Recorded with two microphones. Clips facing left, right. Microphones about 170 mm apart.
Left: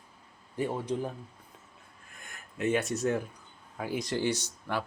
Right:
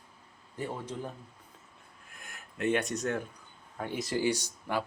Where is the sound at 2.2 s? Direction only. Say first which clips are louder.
Left 1 dB; centre (ahead or behind).